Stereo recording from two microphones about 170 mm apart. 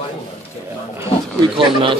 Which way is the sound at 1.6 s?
30° right (ahead or behind).